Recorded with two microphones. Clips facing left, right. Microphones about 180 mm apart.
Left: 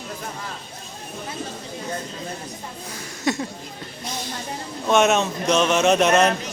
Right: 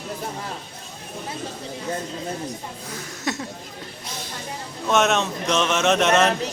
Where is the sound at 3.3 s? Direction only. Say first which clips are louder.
Left 4 dB; centre (ahead or behind).